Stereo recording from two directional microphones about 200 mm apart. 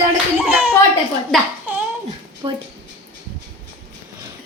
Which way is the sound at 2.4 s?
25° right (ahead or behind).